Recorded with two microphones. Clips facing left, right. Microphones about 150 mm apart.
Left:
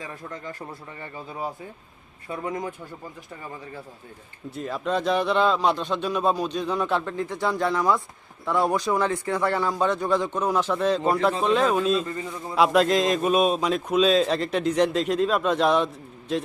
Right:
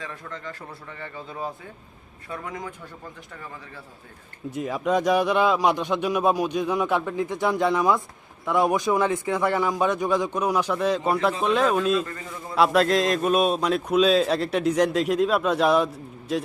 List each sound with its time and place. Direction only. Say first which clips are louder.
0.0 s a man's voice: even; 20° left (ahead or behind)
2.3 s a man's voice: left 4 dB; 25° left (ahead or behind)
4.5 s a man's voice: right 3 dB; 10° right (ahead or behind)
12.0 s a man's voice: left 4 dB; 20° left (ahead or behind)
12.5 s a man's voice: even; centre (ahead or behind)